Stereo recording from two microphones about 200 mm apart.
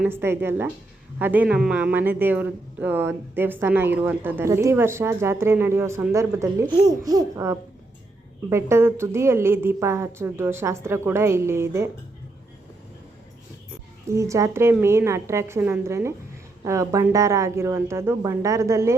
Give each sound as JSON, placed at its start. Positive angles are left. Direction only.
{"t": 0.0, "sound": "speech", "side_deg": -10}
{"t": 14.1, "sound": "speech", "side_deg": -15}